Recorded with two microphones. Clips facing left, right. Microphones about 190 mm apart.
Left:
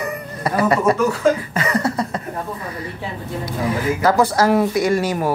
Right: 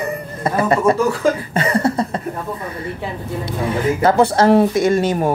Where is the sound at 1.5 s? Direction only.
30° right (ahead or behind).